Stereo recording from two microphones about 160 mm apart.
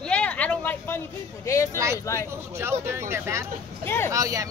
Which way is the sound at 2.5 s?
15° right (ahead or behind).